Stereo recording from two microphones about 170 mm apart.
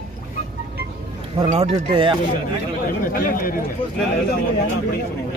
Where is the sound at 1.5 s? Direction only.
40° right (ahead or behind).